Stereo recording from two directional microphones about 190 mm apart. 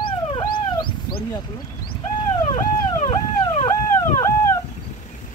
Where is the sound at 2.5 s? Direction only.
40° left (ahead or behind).